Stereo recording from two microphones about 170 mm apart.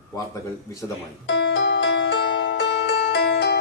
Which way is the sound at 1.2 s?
90° left.